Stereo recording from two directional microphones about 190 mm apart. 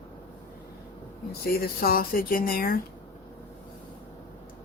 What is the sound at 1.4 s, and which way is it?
Speech, 55° left (ahead or behind).